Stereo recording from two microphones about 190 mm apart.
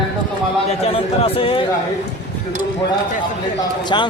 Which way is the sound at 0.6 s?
35° left (ahead or behind).